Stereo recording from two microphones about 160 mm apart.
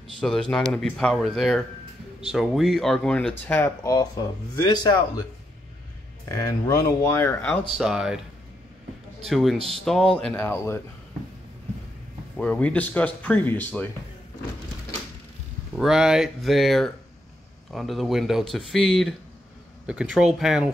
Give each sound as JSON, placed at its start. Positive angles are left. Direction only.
{"t": 0.2, "sound": "speech", "side_deg": 5}
{"t": 6.2, "sound": "speech", "side_deg": 20}
{"t": 7.7, "sound": "speech", "side_deg": -5}
{"t": 9.2, "sound": "speech", "side_deg": 0}
{"t": 12.4, "sound": "speech", "side_deg": 5}
{"t": 15.7, "sound": "speech", "side_deg": -5}